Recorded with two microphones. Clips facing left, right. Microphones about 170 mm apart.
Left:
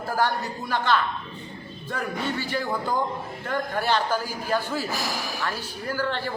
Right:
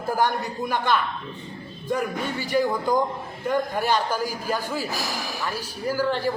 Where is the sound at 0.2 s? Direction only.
15° right (ahead or behind).